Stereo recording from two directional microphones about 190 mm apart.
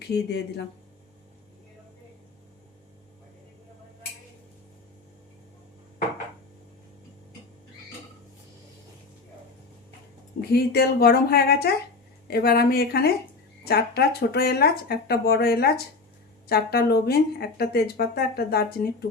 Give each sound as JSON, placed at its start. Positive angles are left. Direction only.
{"t": 0.1, "sound": "speech", "side_deg": 65}
{"t": 10.5, "sound": "speech", "side_deg": 55}